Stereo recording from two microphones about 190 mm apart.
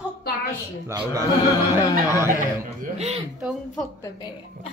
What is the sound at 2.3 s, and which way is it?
Speech, 40° right (ahead or behind).